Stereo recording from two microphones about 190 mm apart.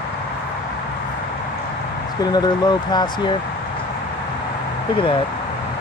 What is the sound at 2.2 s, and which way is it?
Speech, 20° left (ahead or behind).